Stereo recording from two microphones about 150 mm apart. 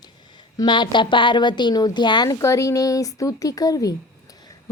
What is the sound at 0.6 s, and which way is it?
A woman's voice, 30° left (ahead or behind).